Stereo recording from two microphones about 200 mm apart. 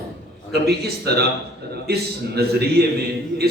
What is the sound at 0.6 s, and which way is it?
A man's voice, 55° right (ahead or behind).